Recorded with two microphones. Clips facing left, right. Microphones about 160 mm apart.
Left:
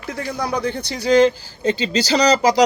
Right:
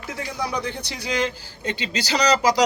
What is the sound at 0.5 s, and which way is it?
Speech, 50° left (ahead or behind).